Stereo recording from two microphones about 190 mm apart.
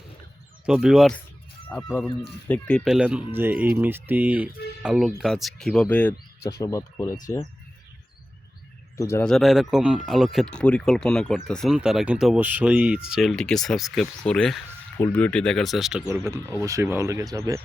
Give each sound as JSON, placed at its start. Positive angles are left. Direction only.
{"t": 0.6, "sound": "speech", "side_deg": -5}
{"t": 1.7, "sound": "speech", "side_deg": 10}
{"t": 9.0, "sound": "speech", "side_deg": 15}
{"t": 9.2, "sound": "speech", "side_deg": 0}
{"t": 16.0, "sound": "speech", "side_deg": -15}